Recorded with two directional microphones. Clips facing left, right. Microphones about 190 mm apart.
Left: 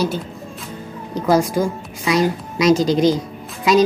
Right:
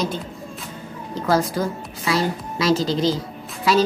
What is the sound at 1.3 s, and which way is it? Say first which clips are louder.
A woman's voice: left 4 dB; 15° left (ahead or behind).